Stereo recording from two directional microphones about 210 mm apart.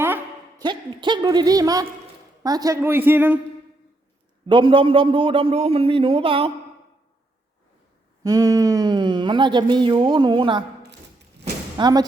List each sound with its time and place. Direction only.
0.6 s a woman's voice: 20° right (ahead or behind)
4.4 s speech: 25° right (ahead or behind)
8.2 s speech: 15° right (ahead or behind)
11.8 s speech: 20° right (ahead or behind)